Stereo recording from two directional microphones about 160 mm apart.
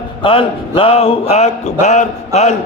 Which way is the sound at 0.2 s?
35° left (ahead or behind).